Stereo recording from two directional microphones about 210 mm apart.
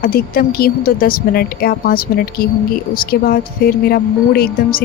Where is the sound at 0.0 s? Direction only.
45° left (ahead or behind).